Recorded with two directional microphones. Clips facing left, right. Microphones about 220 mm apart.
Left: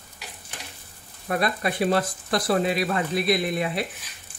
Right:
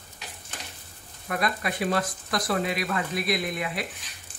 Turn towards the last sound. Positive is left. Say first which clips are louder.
# left 4 dB
turn(degrees=30)  # may be behind; listen again after turning